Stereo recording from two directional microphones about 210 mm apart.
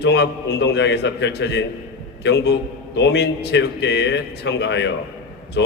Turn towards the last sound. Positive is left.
turn(degrees=55)  # may be behind; listen again after turning